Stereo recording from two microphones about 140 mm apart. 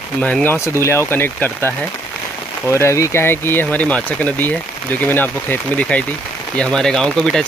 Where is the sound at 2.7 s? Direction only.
20° left (ahead or behind).